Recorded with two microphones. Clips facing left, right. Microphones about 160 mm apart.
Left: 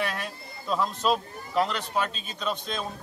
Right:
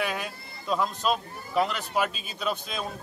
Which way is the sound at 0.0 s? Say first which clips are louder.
Right 1 dB; 5° right (ahead or behind).